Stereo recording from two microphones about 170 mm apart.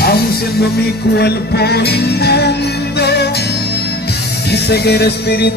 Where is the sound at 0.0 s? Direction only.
65° left (ahead or behind).